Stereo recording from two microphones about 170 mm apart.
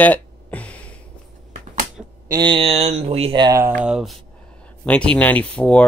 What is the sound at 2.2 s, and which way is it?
Speech, 25° right (ahead or behind).